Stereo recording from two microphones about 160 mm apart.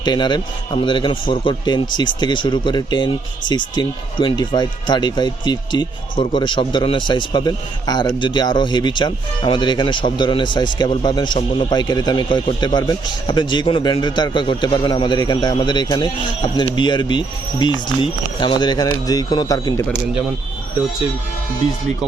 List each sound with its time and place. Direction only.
0.0 s speech: 25° left (ahead or behind)